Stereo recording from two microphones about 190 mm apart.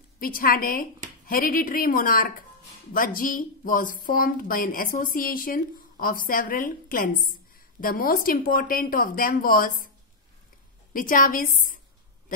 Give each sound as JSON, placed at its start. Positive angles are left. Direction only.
{"t": 0.2, "sound": "a woman's voice", "side_deg": 50}
{"t": 10.9, "sound": "a woman's voice", "side_deg": 45}